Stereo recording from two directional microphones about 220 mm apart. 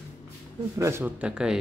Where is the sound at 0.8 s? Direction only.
10° right (ahead or behind).